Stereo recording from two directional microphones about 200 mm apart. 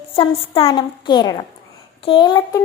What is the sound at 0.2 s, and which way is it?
A woman's voice, 30° left (ahead or behind).